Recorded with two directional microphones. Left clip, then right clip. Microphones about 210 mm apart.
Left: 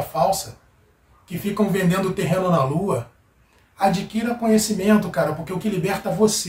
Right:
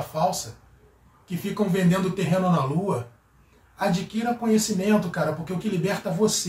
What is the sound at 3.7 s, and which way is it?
Speech, 15° left (ahead or behind).